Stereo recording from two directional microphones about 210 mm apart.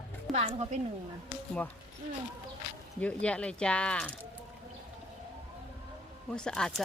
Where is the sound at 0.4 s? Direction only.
30° right (ahead or behind).